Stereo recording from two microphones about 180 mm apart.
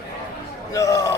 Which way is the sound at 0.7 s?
20° left (ahead or behind).